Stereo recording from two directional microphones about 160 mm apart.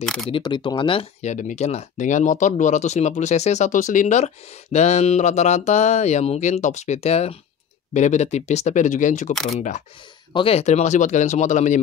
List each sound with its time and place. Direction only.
0.0 s speech: 5° left (ahead or behind)
0.3 s speech: 30° left (ahead or behind)
1.3 s speech: 45° left (ahead or behind)
9.3 s speech: centre (ahead or behind)
9.6 s speech: 50° left (ahead or behind)
10.3 s speech: 35° left (ahead or behind)